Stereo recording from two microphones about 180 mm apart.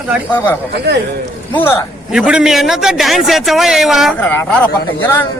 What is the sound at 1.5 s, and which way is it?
Speech, 10° left (ahead or behind).